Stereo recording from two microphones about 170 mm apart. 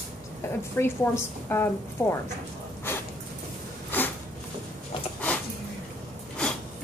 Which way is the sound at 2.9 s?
10° left (ahead or behind).